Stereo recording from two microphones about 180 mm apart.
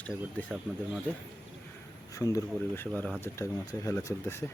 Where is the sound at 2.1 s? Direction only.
20° left (ahead or behind).